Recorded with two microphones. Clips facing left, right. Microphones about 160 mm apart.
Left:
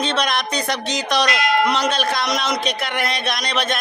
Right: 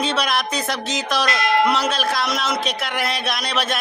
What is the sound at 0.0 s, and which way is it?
Speech, 5° right (ahead or behind).